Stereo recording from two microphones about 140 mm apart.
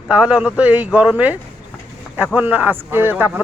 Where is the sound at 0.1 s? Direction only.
10° right (ahead or behind).